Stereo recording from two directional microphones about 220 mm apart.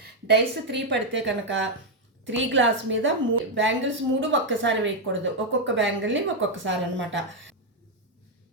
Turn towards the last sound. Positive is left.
turn(degrees=-55)  # may be behind; listen again after turning